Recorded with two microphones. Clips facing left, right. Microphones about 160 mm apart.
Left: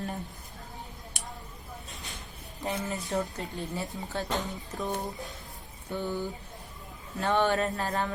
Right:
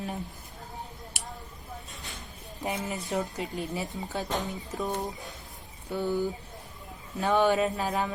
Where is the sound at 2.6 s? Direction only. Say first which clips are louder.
Even; 15° right (ahead or behind).